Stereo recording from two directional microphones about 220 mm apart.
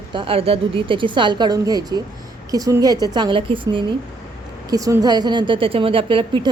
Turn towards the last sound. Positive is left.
turn(degrees=-20)  # may be behind; listen again after turning